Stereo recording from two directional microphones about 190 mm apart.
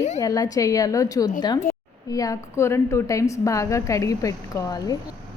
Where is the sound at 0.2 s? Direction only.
20° left (ahead or behind).